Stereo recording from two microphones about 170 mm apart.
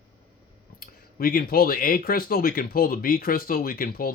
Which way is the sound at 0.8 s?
60° left (ahead or behind).